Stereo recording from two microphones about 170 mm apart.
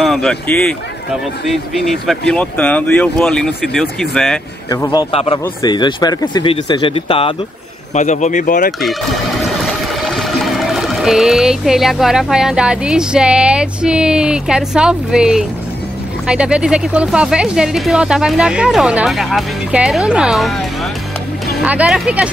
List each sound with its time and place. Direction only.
0.0 s speech: centre (ahead or behind)
4.6 s a man's voice: 15° left (ahead or behind)
5.1 s speech: 35° left (ahead or behind)
5.4 s speech: 25° left (ahead or behind)
7.9 s speech: 45° left (ahead or behind)
9.6 s music: centre (ahead or behind)
16.3 s speech: 5° right (ahead or behind)
21.6 s speech: 5° right (ahead or behind)